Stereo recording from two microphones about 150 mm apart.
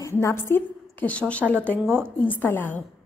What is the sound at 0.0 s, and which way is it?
A woman's voice, 20° left (ahead or behind).